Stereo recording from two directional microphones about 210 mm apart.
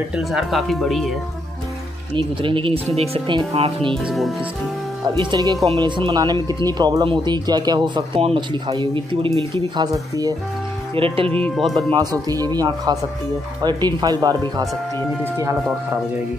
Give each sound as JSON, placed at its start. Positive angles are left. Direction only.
{"t": 0.1, "sound": "speech", "side_deg": 0}
{"t": 2.1, "sound": "speech", "side_deg": -25}
{"t": 3.9, "sound": "speech", "side_deg": 0}
{"t": 5.0, "sound": "speech", "side_deg": -20}
{"t": 11.0, "sound": "speech", "side_deg": -25}
{"t": 11.3, "sound": "speech", "side_deg": 5}
{"t": 11.7, "sound": "speech", "side_deg": -20}